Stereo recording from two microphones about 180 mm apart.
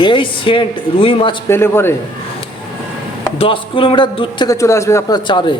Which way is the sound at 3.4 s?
30° left (ahead or behind).